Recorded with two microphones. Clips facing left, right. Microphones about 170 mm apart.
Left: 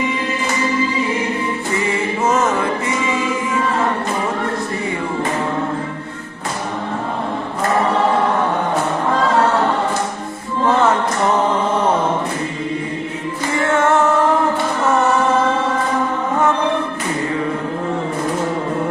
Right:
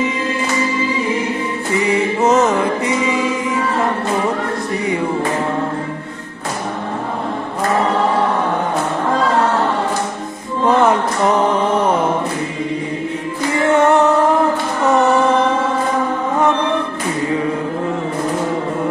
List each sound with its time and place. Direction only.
1.8 s music: 20° right (ahead or behind)
11.7 s mantra: 10° right (ahead or behind)
13.6 s music: 15° right (ahead or behind)